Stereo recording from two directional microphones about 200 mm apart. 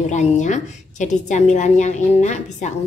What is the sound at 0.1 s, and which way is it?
A woman's voice, 35° left (ahead or behind).